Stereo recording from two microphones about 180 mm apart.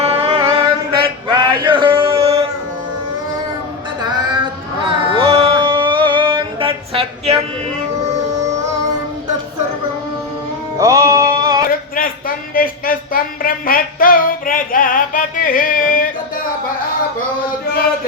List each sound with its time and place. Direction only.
0.0 s mantra: 35° right (ahead or behind)
4.9 s music: 30° right (ahead or behind)
10.8 s music: 20° right (ahead or behind)
11.7 s a sound: 50° left (ahead or behind)